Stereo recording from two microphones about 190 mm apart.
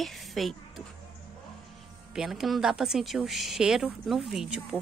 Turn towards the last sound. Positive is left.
turn(degrees=-5)  # may be behind; listen again after turning